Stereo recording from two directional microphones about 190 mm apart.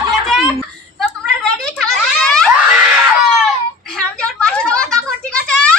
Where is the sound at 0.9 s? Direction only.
5° left (ahead or behind).